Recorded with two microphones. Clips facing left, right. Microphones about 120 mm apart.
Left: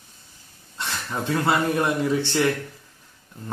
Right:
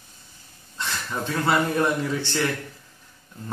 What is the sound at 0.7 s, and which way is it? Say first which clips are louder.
A man's voice: even; 20° left (ahead or behind).